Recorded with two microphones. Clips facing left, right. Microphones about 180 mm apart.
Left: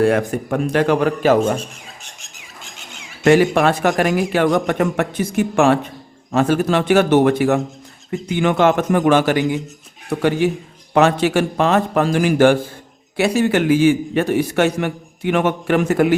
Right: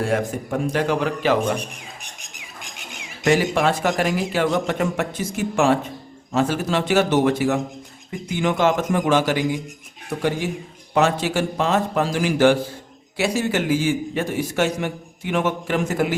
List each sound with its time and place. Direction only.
0.0 s a man's voice: 65° left (ahead or behind); by 1.5 s 45° left (ahead or behind)
2.2 s a sound: 15° right (ahead or behind)
3.2 s a man's voice: 60° left (ahead or behind)